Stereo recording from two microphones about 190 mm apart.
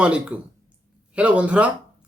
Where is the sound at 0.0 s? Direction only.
5° right (ahead or behind).